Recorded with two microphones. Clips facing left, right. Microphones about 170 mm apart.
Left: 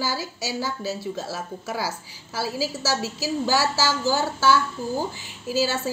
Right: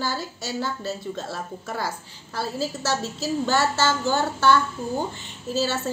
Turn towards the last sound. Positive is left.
turn(degrees=0)  # may be behind; listen again after turning